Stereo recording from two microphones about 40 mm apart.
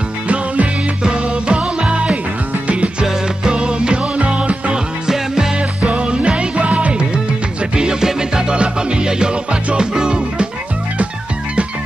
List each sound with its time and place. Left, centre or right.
1.0 s music: right
5.0 s music: centre
5.6 s music: right
7.7 s music: centre